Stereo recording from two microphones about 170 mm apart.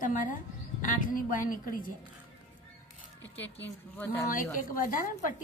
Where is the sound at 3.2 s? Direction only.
10° left (ahead or behind).